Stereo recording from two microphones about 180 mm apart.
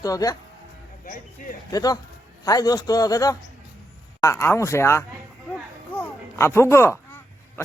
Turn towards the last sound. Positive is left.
turn(degrees=15)  # may be behind; listen again after turning